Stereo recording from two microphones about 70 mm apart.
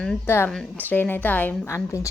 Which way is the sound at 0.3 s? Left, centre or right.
Left.